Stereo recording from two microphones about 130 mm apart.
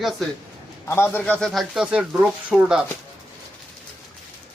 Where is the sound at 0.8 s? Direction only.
20° left (ahead or behind); by 2.9 s 10° right (ahead or behind).